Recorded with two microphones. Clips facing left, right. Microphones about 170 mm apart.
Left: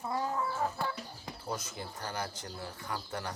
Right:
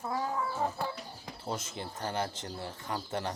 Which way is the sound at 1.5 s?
25° right (ahead or behind).